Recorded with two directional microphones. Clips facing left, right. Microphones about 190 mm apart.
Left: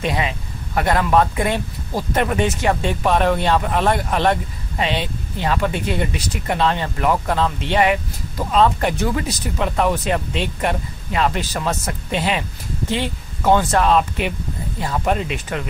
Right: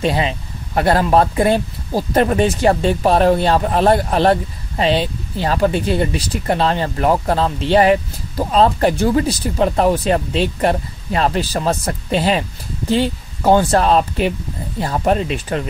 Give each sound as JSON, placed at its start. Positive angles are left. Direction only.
{"t": 0.0, "sound": "speech", "side_deg": -30}